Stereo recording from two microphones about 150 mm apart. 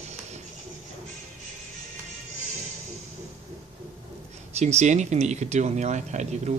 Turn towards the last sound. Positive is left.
turn(degrees=-50)  # may be behind; listen again after turning